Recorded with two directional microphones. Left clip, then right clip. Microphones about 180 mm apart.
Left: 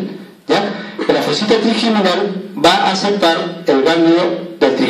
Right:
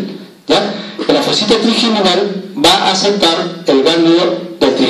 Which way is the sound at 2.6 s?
5° left (ahead or behind).